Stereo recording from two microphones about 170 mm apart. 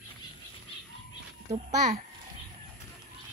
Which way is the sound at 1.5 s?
45° right (ahead or behind).